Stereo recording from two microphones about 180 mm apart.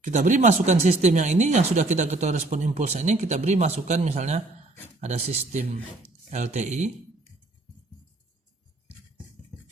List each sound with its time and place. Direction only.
0.0 s speech: 45° right (ahead or behind)